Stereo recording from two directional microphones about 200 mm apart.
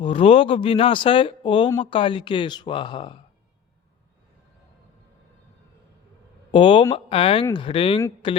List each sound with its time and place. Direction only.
0.0 s speech: 25° left (ahead or behind)
6.5 s speech: 25° left (ahead or behind)